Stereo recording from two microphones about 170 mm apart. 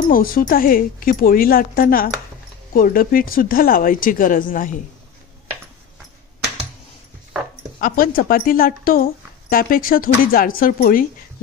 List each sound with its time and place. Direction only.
0.1 s a woman's voice: 55° left (ahead or behind)
7.8 s a woman's voice: 55° left (ahead or behind)